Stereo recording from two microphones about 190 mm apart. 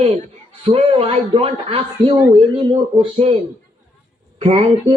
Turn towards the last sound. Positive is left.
turn(degrees=-30)  # may be behind; listen again after turning